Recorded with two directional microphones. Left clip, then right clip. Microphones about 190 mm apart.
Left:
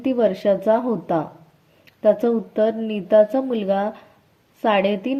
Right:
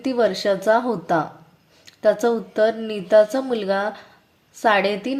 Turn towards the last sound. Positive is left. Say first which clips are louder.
# right 1 dB
turn(degrees=20)  # may be behind; listen again after turning